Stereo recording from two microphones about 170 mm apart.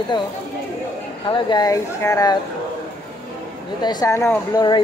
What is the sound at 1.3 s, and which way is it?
Speech, 25° left (ahead or behind).